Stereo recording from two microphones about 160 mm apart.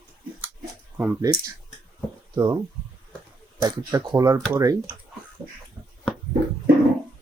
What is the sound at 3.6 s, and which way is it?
Speech, 25° right (ahead or behind).